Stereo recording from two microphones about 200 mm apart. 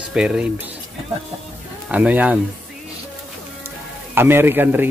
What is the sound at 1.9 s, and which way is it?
Speech, 5° right (ahead or behind).